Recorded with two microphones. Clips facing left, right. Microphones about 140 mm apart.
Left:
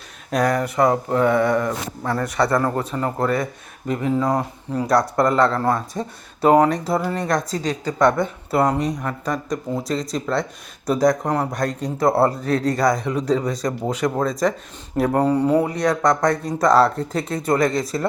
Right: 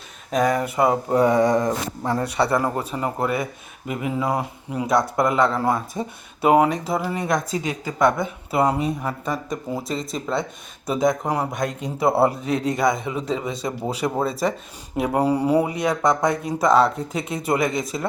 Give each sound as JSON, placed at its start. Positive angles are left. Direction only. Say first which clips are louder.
{"t": 0.3, "sound": "speech", "louder": "left 1 dB", "side_deg": 0}